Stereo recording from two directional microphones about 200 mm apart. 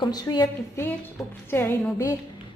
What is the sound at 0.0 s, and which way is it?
A woman's voice, 20° left (ahead or behind).